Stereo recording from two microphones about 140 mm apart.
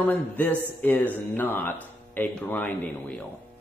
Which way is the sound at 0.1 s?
10° left (ahead or behind).